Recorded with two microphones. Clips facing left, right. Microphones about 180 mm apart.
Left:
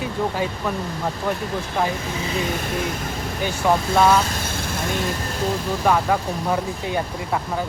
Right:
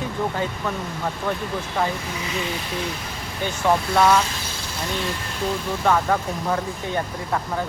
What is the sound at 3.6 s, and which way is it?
Speech, 5° left (ahead or behind).